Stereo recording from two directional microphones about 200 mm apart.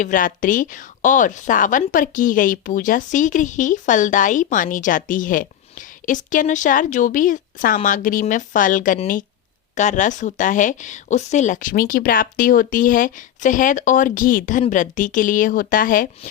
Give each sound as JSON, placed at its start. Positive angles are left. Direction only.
{"t": 0.0, "sound": "a woman's voice", "side_deg": 40}